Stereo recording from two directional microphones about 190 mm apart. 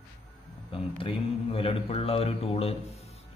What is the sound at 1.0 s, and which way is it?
A man's voice, 30° left (ahead or behind).